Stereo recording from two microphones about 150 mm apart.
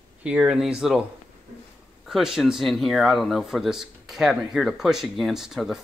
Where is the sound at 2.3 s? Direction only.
5° right (ahead or behind).